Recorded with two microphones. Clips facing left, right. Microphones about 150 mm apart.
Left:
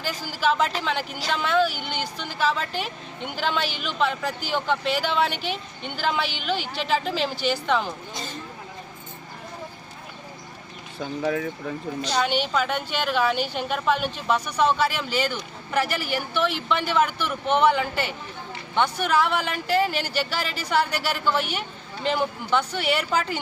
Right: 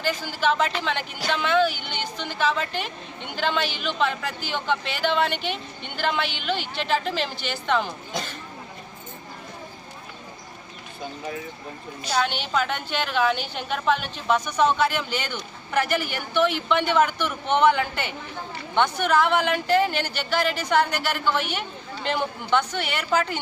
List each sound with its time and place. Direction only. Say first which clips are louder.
0.0 s a woman's voice: right 1 dB; 10° left (ahead or behind)
11.2 s speech: left 9 dB; 90° left
12.5 s a woman's voice: even; 5° left (ahead or behind)